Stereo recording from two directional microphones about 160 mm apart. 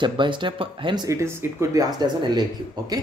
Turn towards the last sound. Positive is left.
turn(degrees=-25)  # may be behind; listen again after turning